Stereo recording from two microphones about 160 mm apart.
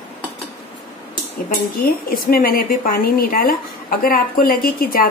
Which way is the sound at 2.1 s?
65° left (ahead or behind).